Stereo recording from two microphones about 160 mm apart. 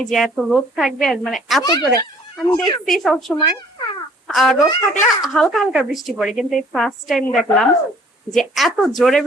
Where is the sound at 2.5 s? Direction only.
25° left (ahead or behind).